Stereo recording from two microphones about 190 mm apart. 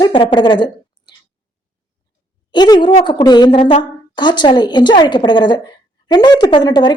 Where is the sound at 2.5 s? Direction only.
25° left (ahead or behind).